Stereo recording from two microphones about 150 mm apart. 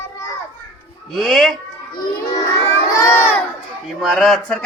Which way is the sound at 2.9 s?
20° left (ahead or behind).